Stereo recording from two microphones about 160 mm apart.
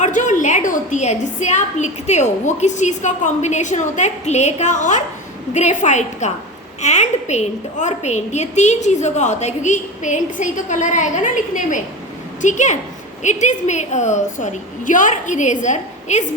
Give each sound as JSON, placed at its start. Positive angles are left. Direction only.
{"t": 0.0, "sound": "a woman's voice", "side_deg": 50}